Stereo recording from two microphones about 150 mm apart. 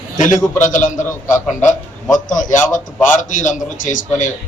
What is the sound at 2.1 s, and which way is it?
A man's voice, 55° left (ahead or behind).